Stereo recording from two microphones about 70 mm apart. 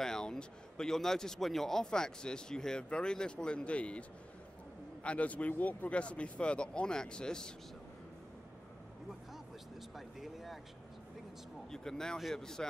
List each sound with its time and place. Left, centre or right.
0.0 s speech: centre
5.0 s speech: centre
9.9 s a sound: centre
11.7 s speech: centre